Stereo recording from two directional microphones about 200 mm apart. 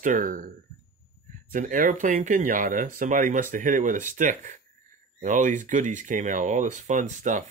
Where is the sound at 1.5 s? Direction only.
40° right (ahead or behind).